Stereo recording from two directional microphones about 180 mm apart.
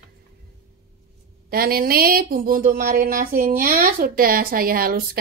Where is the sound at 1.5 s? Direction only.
55° right (ahead or behind).